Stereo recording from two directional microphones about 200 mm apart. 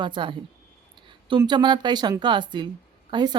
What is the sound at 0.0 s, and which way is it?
Speech, 25° right (ahead or behind).